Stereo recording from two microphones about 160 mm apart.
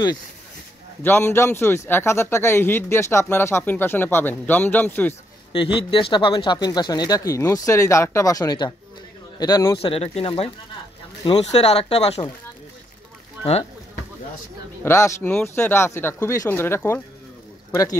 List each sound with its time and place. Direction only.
1.0 s speech: 15° left (ahead or behind)
5.5 s speech: 35° left (ahead or behind)
9.8 s speech: 35° left (ahead or behind)
14.8 s speech: 15° left (ahead or behind)